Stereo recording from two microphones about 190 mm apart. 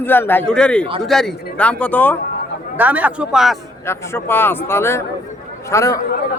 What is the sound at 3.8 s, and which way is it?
Speech, 15° left (ahead or behind).